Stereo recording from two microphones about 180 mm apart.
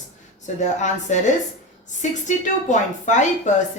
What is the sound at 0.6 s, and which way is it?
Speech, 40° left (ahead or behind).